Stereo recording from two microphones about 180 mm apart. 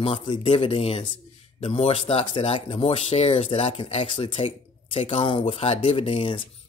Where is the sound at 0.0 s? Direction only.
30° left (ahead or behind).